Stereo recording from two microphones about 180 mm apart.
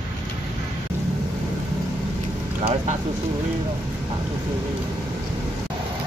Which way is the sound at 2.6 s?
35° right (ahead or behind).